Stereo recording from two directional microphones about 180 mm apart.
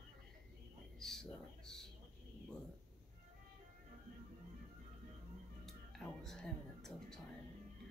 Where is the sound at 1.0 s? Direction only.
5° left (ahead or behind).